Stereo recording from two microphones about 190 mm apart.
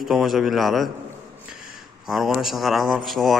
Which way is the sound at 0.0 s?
Centre (ahead or behind).